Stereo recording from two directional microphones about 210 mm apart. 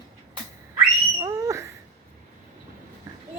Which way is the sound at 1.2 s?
15° right (ahead or behind).